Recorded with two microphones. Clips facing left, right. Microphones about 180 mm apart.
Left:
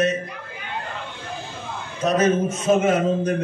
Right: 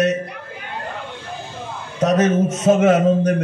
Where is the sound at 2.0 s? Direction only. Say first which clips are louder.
Right 3 dB; 75° right (ahead or behind).